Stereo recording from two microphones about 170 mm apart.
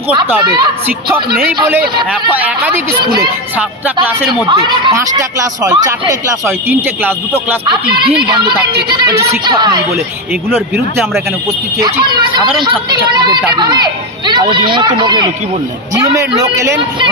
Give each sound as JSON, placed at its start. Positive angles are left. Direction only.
{"t": 2.3, "sound": "a man's voice", "side_deg": -10}
{"t": 4.5, "sound": "speech", "side_deg": -25}
{"t": 8.3, "sound": "speech", "side_deg": -30}
{"t": 11.8, "sound": "speech", "side_deg": -25}
{"t": 14.5, "sound": "a man's voice", "side_deg": -30}